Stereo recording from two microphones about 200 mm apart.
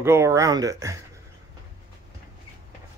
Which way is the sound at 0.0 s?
15° right (ahead or behind).